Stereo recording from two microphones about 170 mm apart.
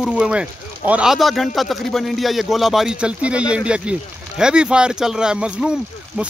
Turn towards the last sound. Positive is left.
turn(degrees=-5)  # may be behind; listen again after turning